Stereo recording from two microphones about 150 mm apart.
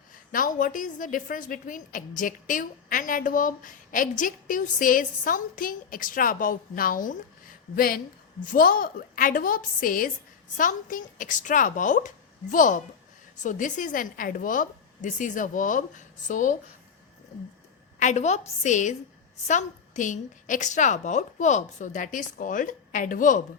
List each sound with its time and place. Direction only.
0.3 s a woman's voice: 65° left (ahead or behind)
7.8 s a woman's voice: 75° left (ahead or behind); by 16.6 s 60° left (ahead or behind)
18.0 s a woman's voice: 50° left (ahead or behind)